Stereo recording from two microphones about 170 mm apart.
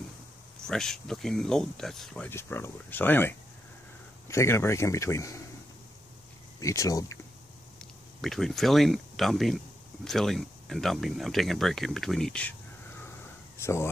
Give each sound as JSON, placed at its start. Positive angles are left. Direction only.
{"t": 0.7, "sound": "speech", "side_deg": 5}
{"t": 6.6, "sound": "speech", "side_deg": 20}
{"t": 7.8, "sound": "speech", "side_deg": 0}
{"t": 13.6, "sound": "speech", "side_deg": 15}